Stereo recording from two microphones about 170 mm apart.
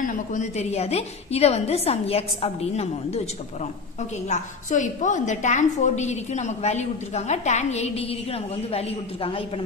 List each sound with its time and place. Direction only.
0.0 s a woman's voice: 50° left (ahead or behind)
4.3 s a woman's voice: 45° left (ahead or behind)